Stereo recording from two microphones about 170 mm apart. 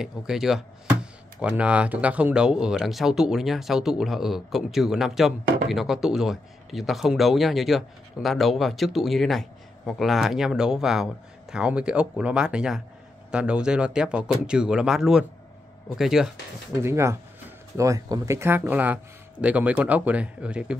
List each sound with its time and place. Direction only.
0.0 s speech: centre (ahead or behind)
16.8 s speech: 15° right (ahead or behind)